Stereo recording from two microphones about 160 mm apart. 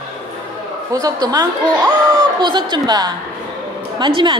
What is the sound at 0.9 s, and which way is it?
A woman's voice, 25° right (ahead or behind).